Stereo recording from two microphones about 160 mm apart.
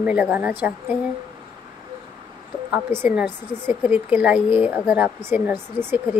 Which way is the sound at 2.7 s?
10° right (ahead or behind).